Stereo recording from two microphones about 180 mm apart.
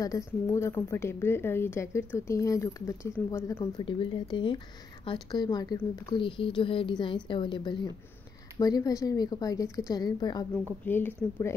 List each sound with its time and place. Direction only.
0.0 s a woman's voice: 20° left (ahead or behind)
3.8 s a woman's voice: 30° left (ahead or behind)
10.9 s a woman's voice: 10° left (ahead or behind)